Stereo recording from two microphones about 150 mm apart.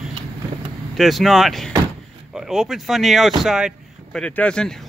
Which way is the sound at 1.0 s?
Centre (ahead or behind).